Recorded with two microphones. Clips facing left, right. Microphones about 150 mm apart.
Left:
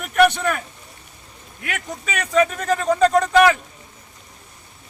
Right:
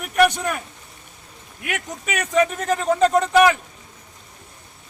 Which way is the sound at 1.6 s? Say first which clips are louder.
Right 1 dB; 15° right (ahead or behind).